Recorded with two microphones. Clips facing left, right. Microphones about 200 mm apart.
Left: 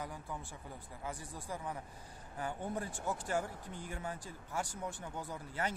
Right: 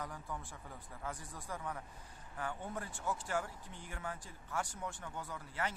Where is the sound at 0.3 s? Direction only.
Centre (ahead or behind).